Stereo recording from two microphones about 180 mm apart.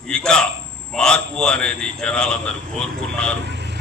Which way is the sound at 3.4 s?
75° right (ahead or behind).